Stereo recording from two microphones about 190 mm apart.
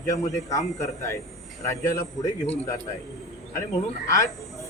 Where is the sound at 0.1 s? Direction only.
15° left (ahead or behind).